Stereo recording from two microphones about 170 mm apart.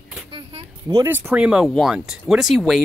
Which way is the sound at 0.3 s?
30° right (ahead or behind).